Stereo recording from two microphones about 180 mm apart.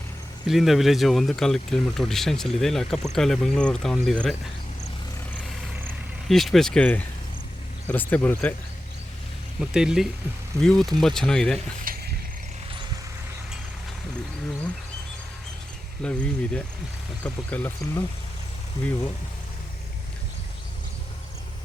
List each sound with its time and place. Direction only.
0.4 s speech: centre (ahead or behind)
6.2 s speech: centre (ahead or behind)
9.6 s speech: 5° right (ahead or behind)
11.9 s a sound: 50° right (ahead or behind)
16.0 s speech: 5° left (ahead or behind)